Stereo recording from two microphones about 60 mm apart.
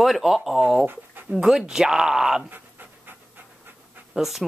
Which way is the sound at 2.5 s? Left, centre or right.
Right.